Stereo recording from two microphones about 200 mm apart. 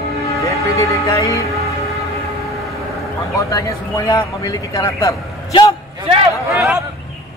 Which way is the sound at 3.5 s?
20° left (ahead or behind).